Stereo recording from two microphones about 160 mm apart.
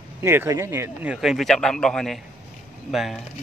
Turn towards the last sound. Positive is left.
turn(degrees=0)  # may be behind; listen again after turning